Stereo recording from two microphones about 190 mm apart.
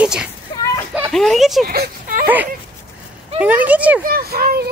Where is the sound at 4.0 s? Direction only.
50° right (ahead or behind).